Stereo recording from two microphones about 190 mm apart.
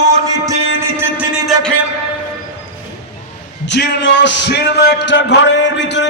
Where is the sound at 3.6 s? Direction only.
65° left (ahead or behind).